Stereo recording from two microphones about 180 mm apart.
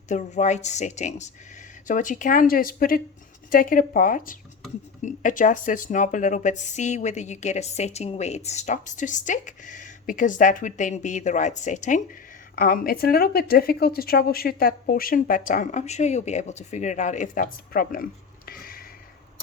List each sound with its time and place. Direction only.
0.1 s a woman's voice: 40° left (ahead or behind)
12.5 s speech: 55° left (ahead or behind)